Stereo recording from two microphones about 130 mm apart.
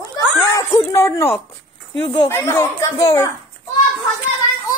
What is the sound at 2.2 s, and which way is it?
Speech, 20° left (ahead or behind).